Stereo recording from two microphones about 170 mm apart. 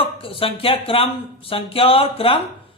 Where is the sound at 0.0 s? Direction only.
30° left (ahead or behind).